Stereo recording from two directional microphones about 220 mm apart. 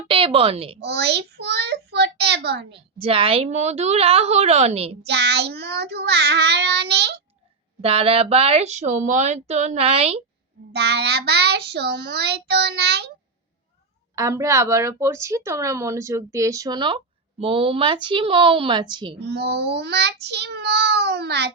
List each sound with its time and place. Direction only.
0.1 s speech: 25° right (ahead or behind)
0.8 s child singing: 50° right (ahead or behind)
2.7 s speech: 25° right (ahead or behind)
5.0 s a child's voice: 50° right (ahead or behind)
7.8 s speech: 25° right (ahead or behind)
10.7 s a child's voice: 50° right (ahead or behind)
14.2 s a woman's voice: 15° right (ahead or behind)
19.2 s a child's voice: 50° right (ahead or behind)